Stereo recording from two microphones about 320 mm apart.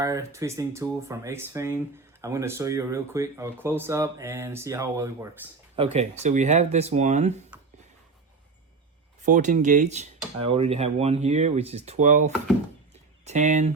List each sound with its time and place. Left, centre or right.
0.0 s speech: centre
9.2 s speech: right